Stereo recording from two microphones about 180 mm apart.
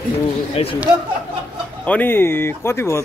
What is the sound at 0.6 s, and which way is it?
Speech, 35° left (ahead or behind).